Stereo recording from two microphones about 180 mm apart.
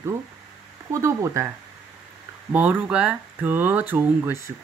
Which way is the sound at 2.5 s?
10° right (ahead or behind).